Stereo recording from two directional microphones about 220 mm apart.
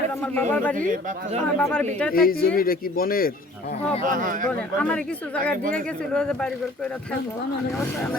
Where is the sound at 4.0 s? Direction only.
40° right (ahead or behind).